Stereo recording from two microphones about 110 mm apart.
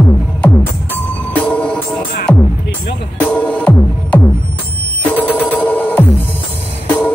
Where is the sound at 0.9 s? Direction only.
15° left (ahead or behind).